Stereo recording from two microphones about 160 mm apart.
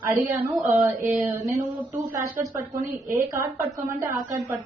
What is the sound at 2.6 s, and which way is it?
A woman's voice, 15° right (ahead or behind).